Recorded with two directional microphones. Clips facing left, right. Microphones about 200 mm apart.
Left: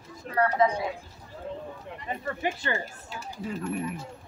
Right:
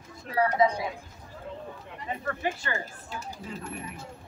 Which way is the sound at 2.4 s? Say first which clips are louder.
Left 4 dB; 20° left (ahead or behind).